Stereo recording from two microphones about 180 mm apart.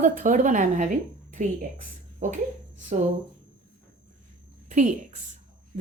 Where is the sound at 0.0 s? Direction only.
45° right (ahead or behind).